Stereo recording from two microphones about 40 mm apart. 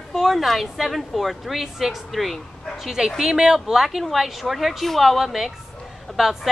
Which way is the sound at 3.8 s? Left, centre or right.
Centre.